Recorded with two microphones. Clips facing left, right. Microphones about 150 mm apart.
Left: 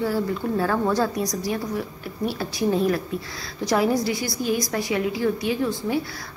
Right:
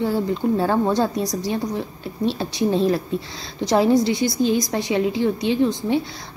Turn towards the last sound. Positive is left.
turn(degrees=-20)  # may be behind; listen again after turning